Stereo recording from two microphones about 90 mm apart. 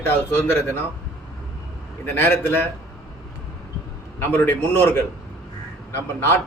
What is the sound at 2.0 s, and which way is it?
Speech, 25° left (ahead or behind).